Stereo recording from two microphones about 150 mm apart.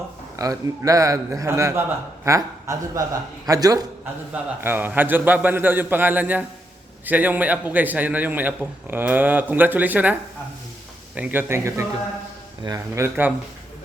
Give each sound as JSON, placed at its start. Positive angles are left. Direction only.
{"t": 0.3, "sound": "a man's voice", "side_deg": -20}
{"t": 4.6, "sound": "a man's voice", "side_deg": -15}